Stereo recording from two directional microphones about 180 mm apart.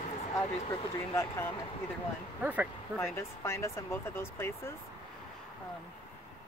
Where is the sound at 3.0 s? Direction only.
15° left (ahead or behind).